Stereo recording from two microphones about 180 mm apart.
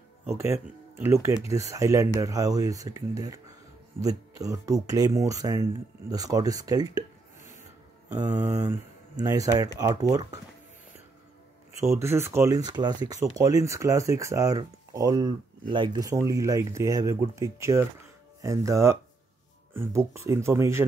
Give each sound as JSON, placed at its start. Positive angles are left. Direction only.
{"t": 0.3, "sound": "speech", "side_deg": -15}
{"t": 4.4, "sound": "speech", "side_deg": -20}
{"t": 8.2, "sound": "speech", "side_deg": -20}
{"t": 12.0, "sound": "speech", "side_deg": -15}